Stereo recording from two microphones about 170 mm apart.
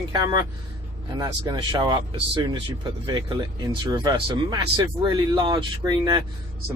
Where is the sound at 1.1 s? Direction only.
25° right (ahead or behind).